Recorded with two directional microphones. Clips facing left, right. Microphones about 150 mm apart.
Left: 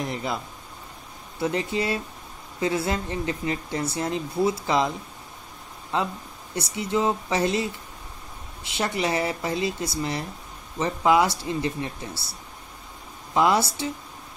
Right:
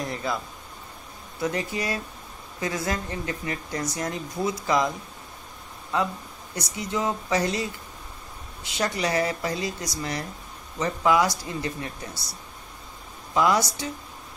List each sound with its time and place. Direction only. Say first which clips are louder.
0.0 s a sound: even; 20° left (ahead or behind)
1.4 s speech: left 2 dB; 25° left (ahead or behind)
8.6 s speech: left 1 dB; 25° left (ahead or behind)